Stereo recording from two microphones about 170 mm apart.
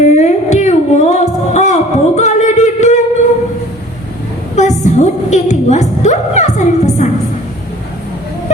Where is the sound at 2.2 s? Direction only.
45° left (ahead or behind).